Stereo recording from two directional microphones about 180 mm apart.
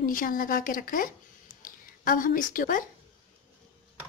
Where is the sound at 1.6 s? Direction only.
50° left (ahead or behind).